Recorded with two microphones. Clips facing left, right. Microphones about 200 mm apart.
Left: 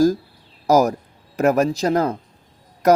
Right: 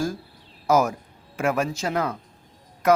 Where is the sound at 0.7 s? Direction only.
35° left (ahead or behind).